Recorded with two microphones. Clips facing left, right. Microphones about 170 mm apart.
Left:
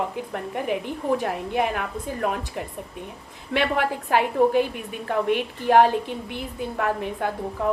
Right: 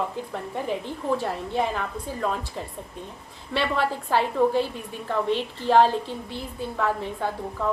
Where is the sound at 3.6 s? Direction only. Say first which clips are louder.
Left 1 dB; 55° left (ahead or behind).